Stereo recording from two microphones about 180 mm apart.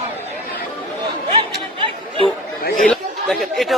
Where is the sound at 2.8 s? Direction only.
Centre (ahead or behind).